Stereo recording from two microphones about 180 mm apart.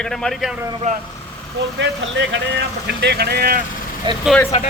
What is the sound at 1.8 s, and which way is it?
Speech, 80° right.